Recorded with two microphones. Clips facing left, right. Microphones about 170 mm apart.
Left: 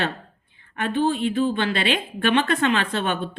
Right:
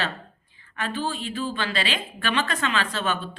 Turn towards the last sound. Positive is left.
turn(degrees=55)  # may be behind; listen again after turning